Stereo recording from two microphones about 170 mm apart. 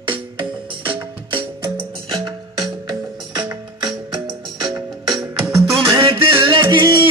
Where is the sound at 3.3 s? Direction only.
25° right (ahead or behind).